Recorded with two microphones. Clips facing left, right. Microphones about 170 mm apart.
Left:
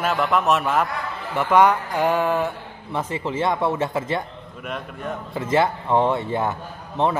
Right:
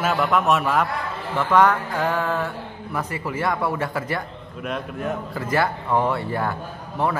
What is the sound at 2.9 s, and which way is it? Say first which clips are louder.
Speech: left 3 dB; 25° left (ahead or behind).